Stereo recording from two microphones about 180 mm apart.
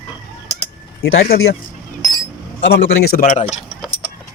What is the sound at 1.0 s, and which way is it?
Speech, 60° left (ahead or behind).